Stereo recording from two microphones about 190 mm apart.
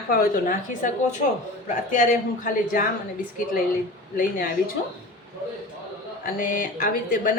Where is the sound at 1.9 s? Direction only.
45° left (ahead or behind).